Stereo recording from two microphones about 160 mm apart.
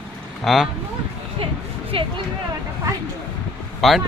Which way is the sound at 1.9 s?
30° right (ahead or behind).